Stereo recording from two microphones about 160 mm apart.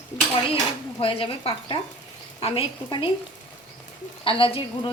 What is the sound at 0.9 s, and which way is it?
A woman's voice, 35° left (ahead or behind).